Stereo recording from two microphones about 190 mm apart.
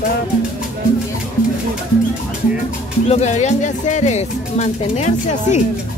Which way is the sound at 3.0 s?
35° left (ahead or behind).